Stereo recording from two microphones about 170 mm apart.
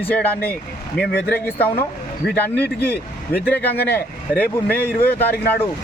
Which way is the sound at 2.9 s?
70° left (ahead or behind).